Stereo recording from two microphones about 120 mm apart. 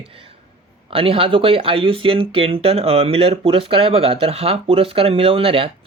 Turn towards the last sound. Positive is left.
turn(degrees=-50)  # may be behind; listen again after turning